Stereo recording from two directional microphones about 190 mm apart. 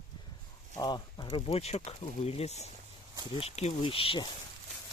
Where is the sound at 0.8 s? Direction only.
20° left (ahead or behind).